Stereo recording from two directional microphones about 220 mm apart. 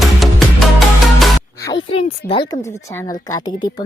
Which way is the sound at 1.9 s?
25° left (ahead or behind).